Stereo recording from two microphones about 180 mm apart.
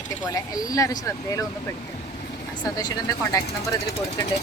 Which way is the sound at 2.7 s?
20° left (ahead or behind).